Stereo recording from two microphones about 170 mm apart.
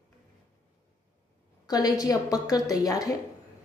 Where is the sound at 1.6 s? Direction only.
25° left (ahead or behind).